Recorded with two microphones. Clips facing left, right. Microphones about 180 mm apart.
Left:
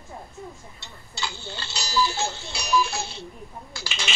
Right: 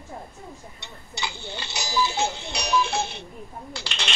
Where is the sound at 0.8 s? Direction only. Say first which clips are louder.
Right 1 dB; 20° right (ahead or behind).